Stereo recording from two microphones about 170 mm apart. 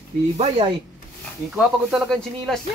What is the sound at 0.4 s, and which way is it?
Speech, 30° right (ahead or behind).